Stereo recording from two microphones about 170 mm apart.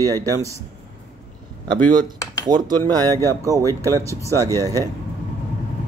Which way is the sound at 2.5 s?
25° right (ahead or behind).